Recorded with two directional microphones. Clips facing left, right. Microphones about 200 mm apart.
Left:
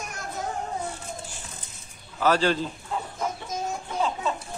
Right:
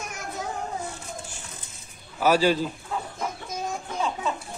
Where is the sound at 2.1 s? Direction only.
10° right (ahead or behind).